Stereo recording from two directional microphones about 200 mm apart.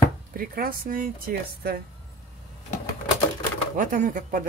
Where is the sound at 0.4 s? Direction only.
45° right (ahead or behind).